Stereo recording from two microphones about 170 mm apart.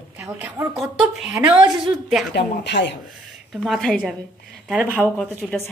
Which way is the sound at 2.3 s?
85° left.